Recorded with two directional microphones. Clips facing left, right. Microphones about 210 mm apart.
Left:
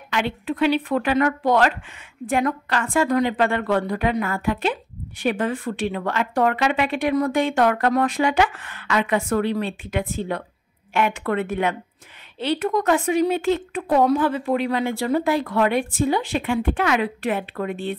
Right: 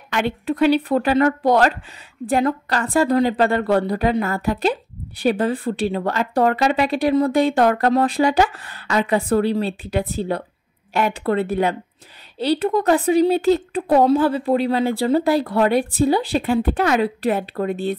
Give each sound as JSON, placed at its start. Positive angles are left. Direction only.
{"t": 0.1, "sound": "speech", "side_deg": -45}